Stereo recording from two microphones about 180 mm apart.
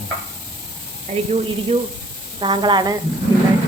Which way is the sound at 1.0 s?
35° right (ahead or behind).